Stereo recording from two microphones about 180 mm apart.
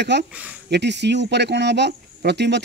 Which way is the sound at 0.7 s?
70° right (ahead or behind).